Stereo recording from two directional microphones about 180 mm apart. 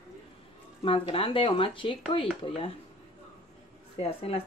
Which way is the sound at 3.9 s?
35° left (ahead or behind).